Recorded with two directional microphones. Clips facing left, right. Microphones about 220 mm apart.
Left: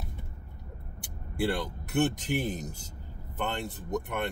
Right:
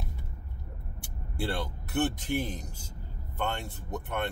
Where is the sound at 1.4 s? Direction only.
15° left (ahead or behind).